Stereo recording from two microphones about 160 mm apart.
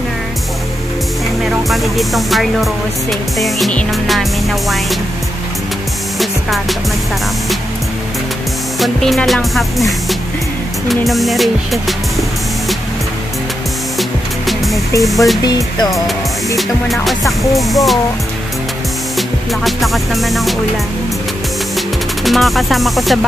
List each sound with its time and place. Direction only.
1.4 s music: centre (ahead or behind)
8.7 s music: centre (ahead or behind)
13.9 s music: centre (ahead or behind)
15.4 s speech: 25° left (ahead or behind)
16.5 s music: centre (ahead or behind)
19.1 s music: centre (ahead or behind)
21.7 s music: centre (ahead or behind)